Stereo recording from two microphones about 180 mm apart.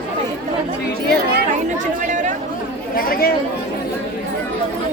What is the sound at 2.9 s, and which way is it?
Speech, 55° left (ahead or behind).